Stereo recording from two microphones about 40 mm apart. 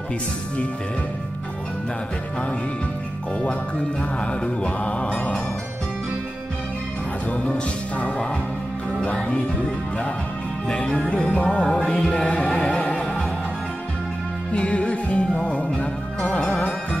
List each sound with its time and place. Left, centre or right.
4.2 s music: left
7.2 s music: left
9.0 s music: centre
11.3 s music: left
14.5 s music: left